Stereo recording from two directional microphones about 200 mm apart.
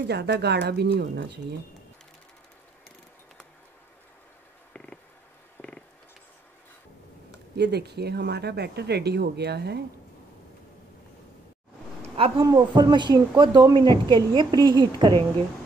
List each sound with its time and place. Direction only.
0.0 s speech: 55° right (ahead or behind)
5.6 s a sound: 5° left (ahead or behind)
7.5 s speech: 55° right (ahead or behind)
12.2 s speech: 20° right (ahead or behind)